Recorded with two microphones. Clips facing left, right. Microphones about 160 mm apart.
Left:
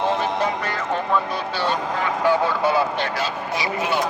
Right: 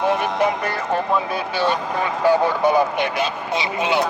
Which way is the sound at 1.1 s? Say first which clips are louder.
Right 1 dB; 15° right (ahead or behind).